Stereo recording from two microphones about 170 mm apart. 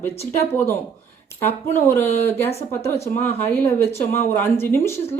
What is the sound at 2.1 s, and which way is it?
Speech, 40° left (ahead or behind).